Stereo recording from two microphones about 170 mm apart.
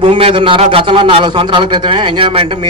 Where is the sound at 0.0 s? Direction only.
30° right (ahead or behind).